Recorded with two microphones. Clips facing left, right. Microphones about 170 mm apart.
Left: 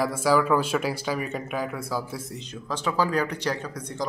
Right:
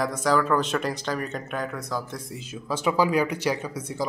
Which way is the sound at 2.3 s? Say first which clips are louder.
Right 6 dB; 5° right (ahead or behind).